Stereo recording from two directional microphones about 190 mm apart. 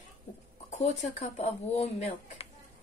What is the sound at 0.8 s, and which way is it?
A woman's voice, 35° left (ahead or behind).